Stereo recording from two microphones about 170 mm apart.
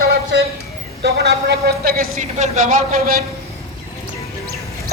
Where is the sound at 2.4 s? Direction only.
50° right (ahead or behind).